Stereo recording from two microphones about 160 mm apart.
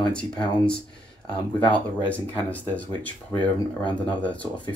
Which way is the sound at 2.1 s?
10° left (ahead or behind).